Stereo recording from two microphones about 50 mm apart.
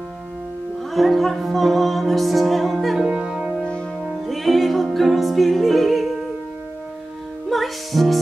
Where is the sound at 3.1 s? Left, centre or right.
Centre.